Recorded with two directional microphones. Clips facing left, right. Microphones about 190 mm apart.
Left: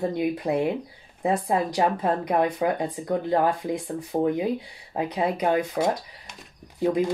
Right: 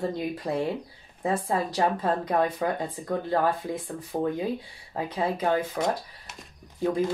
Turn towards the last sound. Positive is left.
turn(degrees=15)  # may be behind; listen again after turning